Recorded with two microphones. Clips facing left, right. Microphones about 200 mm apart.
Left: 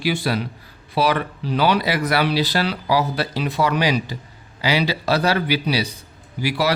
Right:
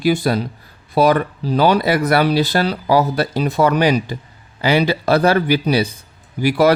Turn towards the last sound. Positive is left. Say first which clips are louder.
# right 7 dB
turn(degrees=-50)  # may be behind; listen again after turning